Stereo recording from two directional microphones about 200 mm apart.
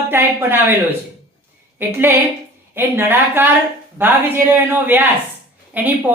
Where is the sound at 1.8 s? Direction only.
10° right (ahead or behind).